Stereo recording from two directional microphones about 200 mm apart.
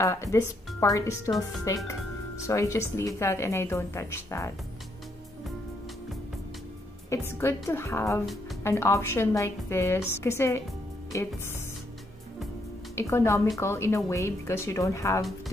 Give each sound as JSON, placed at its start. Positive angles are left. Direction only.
{"t": 0.0, "sound": "a woman's voice", "side_deg": 15}
{"t": 7.1, "sound": "a woman's voice", "side_deg": 10}
{"t": 12.9, "sound": "a woman's voice", "side_deg": 15}